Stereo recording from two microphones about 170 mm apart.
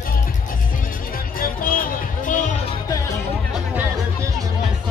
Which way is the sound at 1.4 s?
55° left (ahead or behind).